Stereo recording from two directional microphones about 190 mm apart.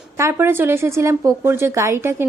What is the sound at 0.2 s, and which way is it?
A woman's voice, 15° right (ahead or behind).